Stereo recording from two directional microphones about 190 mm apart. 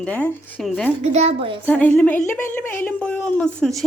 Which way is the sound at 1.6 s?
10° left (ahead or behind).